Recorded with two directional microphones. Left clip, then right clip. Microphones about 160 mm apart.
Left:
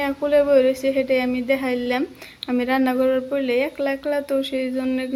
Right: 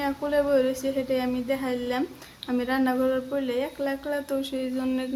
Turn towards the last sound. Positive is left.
turn(degrees=15)  # may be behind; listen again after turning